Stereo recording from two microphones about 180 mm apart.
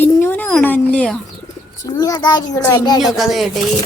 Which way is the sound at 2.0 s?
20° left (ahead or behind).